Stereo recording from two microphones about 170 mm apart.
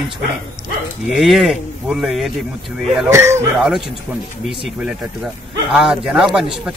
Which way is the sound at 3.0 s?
15° right (ahead or behind).